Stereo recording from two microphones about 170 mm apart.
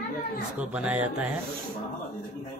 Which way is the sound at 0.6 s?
10° right (ahead or behind).